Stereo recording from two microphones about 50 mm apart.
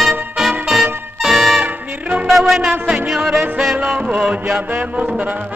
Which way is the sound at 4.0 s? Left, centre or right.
Right.